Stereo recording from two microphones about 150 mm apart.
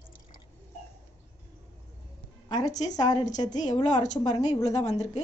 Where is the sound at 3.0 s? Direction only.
25° left (ahead or behind).